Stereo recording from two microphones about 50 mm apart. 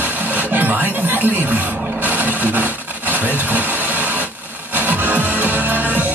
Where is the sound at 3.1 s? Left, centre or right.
Right.